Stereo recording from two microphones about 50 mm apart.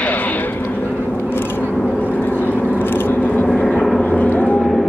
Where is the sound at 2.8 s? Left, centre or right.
Left.